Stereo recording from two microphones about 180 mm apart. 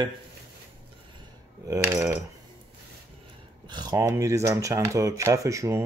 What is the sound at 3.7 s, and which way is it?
Speech, 25° right (ahead or behind).